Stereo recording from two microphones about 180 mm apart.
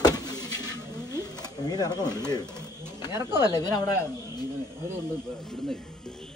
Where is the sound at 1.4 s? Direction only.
20° left (ahead or behind).